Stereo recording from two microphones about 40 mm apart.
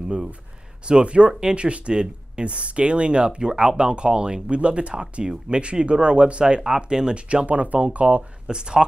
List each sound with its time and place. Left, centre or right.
0.8 s speech: right
7.2 s speech: right
8.5 s speech: right